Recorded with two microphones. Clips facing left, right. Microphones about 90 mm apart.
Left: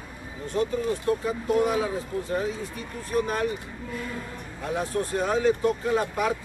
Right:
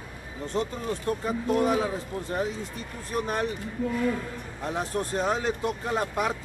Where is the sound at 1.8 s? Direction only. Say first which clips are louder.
Left 1 dB; 25° right (ahead or behind).